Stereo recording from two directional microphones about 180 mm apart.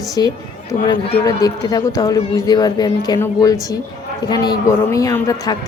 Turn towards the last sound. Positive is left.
turn(degrees=20)  # may be behind; listen again after turning